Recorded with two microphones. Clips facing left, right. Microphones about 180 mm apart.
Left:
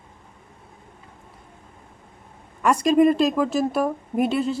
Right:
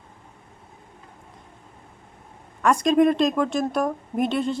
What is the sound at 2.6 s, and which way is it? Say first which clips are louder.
A woman's voice: left 1 dB; 5° left (ahead or behind).